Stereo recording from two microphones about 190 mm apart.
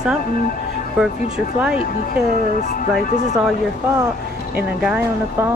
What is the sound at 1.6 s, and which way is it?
Speech, 5° right (ahead or behind).